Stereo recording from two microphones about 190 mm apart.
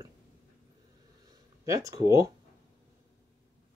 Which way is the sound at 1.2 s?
20° right (ahead or behind).